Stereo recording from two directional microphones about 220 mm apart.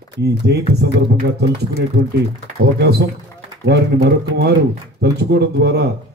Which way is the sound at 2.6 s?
50° right (ahead or behind).